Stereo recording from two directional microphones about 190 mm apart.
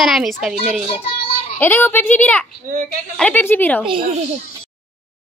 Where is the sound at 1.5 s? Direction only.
10° left (ahead or behind).